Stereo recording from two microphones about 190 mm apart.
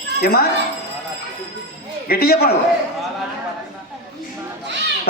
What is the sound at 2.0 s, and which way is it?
Speech, 50° left (ahead or behind).